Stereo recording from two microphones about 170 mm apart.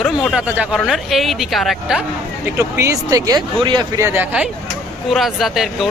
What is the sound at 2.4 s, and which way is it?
Speech, 15° right (ahead or behind).